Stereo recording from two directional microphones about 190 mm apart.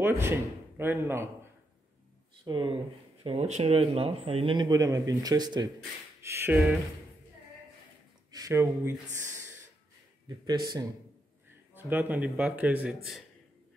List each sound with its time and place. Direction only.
0.0 s a man's voice: 10° right (ahead or behind)
2.4 s speech: 25° right (ahead or behind)
8.3 s speech: 20° right (ahead or behind)
10.2 s speech: 20° right (ahead or behind)
11.7 s speech: 10° right (ahead or behind)